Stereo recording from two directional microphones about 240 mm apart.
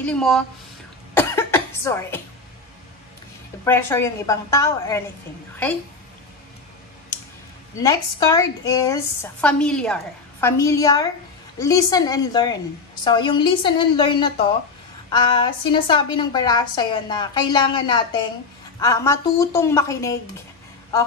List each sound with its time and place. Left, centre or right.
0.0 s a woman's voice: centre
1.1 s cough: centre
3.6 s a woman's voice: centre
7.8 s a woman's voice: centre